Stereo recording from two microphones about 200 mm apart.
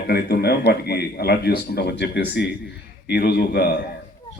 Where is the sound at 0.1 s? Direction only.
55° left (ahead or behind).